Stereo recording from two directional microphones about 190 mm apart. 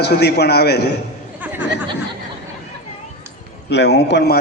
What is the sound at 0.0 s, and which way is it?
Speech, 60° left (ahead or behind).